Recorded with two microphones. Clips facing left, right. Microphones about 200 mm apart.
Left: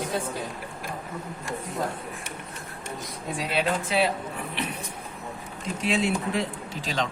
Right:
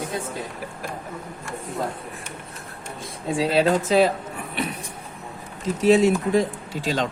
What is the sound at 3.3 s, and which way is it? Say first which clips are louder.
Speech: right 8 dB; 30° right (ahead or behind).